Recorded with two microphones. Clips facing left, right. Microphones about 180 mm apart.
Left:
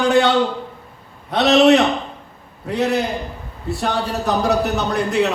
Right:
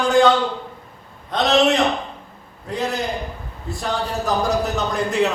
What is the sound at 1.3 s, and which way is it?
A man's voice, 70° left (ahead or behind).